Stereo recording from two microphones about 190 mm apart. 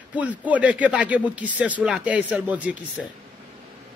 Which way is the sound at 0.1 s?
10° right (ahead or behind).